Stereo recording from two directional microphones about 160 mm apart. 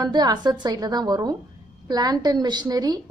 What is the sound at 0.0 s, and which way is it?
A woman's voice, 25° right (ahead or behind).